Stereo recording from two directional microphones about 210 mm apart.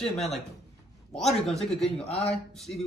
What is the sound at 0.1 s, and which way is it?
Speech, centre (ahead or behind).